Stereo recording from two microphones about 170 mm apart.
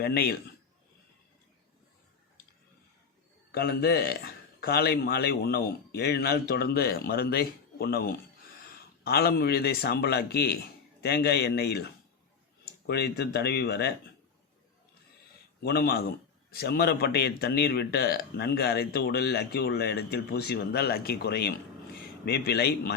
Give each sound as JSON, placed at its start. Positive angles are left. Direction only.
{"t": 0.0, "sound": "speech", "side_deg": 70}
{"t": 3.5, "sound": "speech", "side_deg": 65}
{"t": 15.6, "sound": "speech", "side_deg": 70}